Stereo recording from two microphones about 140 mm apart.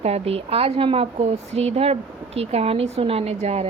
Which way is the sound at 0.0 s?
45° right (ahead or behind).